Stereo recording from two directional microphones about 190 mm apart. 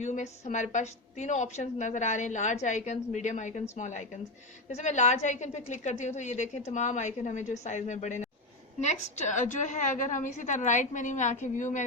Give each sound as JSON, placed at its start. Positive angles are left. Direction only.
{"t": 0.0, "sound": "a woman's voice", "side_deg": 40}